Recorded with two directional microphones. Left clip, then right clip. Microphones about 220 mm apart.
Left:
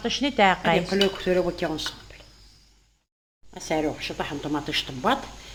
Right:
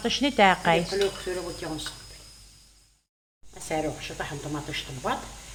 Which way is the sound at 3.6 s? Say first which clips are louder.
Left 3 dB; 35° left (ahead or behind).